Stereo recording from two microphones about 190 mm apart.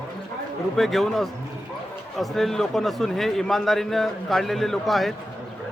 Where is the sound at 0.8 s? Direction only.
Centre (ahead or behind).